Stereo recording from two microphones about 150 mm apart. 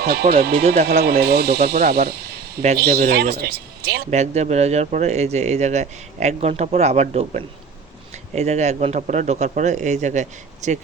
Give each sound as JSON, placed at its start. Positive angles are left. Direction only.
{"t": 0.0, "sound": "speech", "side_deg": -90}
{"t": 4.1, "sound": "speech", "side_deg": -50}